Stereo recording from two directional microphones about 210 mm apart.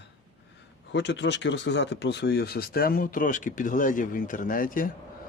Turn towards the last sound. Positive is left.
turn(degrees=40)  # may be behind; listen again after turning